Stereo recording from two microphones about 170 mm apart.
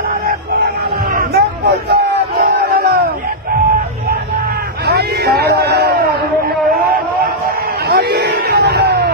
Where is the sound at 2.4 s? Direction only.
65° right (ahead or behind).